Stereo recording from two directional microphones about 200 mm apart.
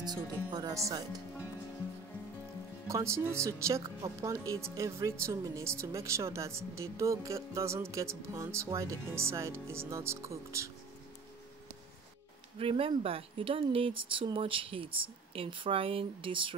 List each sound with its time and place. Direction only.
0.0 s speech: 20° right (ahead or behind)
2.9 s speech: 15° right (ahead or behind)
12.5 s speech: 30° right (ahead or behind)